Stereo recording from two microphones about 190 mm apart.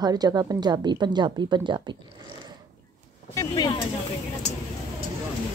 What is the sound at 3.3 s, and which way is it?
Speech, 20° left (ahead or behind).